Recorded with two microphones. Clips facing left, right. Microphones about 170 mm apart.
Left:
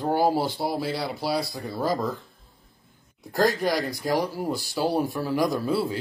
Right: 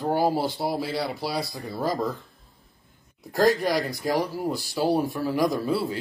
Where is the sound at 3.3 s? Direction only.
Centre (ahead or behind).